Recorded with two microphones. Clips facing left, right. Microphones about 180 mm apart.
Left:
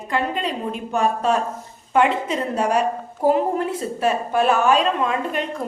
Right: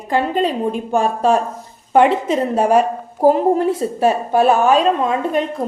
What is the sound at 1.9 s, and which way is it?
A woman's voice, 45° right (ahead or behind).